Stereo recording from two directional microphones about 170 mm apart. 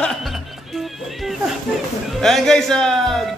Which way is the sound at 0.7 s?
Centre (ahead or behind).